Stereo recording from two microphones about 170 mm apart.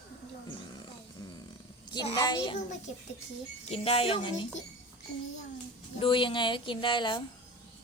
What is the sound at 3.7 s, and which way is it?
Speech, 35° left (ahead or behind).